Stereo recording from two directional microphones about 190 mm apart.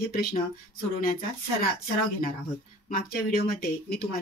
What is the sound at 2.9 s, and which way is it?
Speech, 50° left (ahead or behind).